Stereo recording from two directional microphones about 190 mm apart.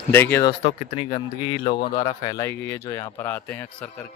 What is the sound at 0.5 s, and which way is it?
Speech, 30° left (ahead or behind).